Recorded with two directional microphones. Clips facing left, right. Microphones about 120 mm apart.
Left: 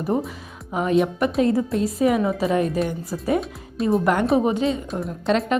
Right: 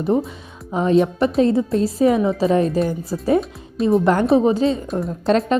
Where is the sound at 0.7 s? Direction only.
30° right (ahead or behind).